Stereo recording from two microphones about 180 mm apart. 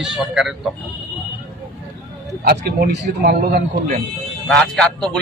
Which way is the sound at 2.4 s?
55° right (ahead or behind).